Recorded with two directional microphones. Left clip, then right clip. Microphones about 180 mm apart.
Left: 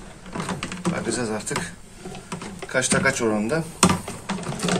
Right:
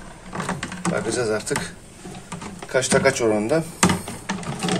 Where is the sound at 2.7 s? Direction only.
20° right (ahead or behind).